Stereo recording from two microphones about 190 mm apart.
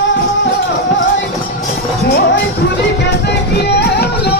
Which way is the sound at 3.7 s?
60° left (ahead or behind).